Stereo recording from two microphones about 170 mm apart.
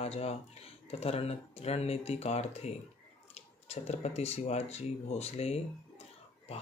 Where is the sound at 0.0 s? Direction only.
35° left (ahead or behind).